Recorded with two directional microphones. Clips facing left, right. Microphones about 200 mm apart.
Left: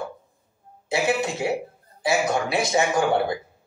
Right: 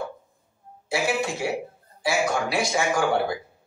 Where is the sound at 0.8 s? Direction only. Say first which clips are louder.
Left 2 dB; 20° left (ahead or behind).